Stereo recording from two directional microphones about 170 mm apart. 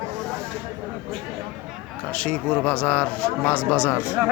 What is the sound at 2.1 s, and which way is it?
Speech, 5° left (ahead or behind).